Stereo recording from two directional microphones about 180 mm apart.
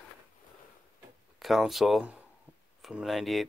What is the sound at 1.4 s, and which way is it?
Speech, centre (ahead or behind).